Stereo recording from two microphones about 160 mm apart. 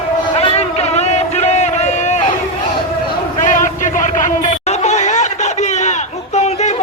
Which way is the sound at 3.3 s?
55° left (ahead or behind).